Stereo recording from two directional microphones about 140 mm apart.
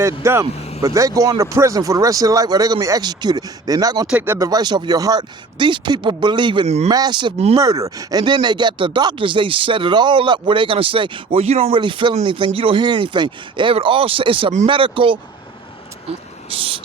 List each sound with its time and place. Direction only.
0.0 s speech: 20° right (ahead or behind)
4.0 s speech: 10° right (ahead or behind)
4.4 s speech: 25° right (ahead or behind)
6.7 s speech: 50° right (ahead or behind)
6.9 s speech: 30° right (ahead or behind)
7.3 s speech: 50° right (ahead or behind)
7.6 s speech: 25° right (ahead or behind); by 11.8 s 45° right (ahead or behind)
11.8 s speech: 35° right (ahead or behind)
16.5 s speech: 40° right (ahead or behind)